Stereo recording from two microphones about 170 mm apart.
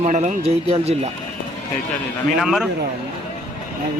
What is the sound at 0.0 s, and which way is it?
Speech, 45° right (ahead or behind).